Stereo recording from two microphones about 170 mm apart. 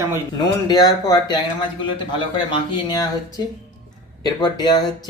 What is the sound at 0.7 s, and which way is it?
Speech, 20° left (ahead or behind).